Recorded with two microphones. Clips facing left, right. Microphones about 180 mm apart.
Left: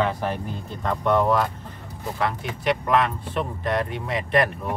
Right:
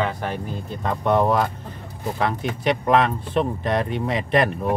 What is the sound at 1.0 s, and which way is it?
Speech, 15° right (ahead or behind).